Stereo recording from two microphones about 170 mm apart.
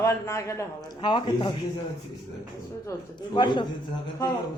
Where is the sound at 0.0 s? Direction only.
15° left (ahead or behind).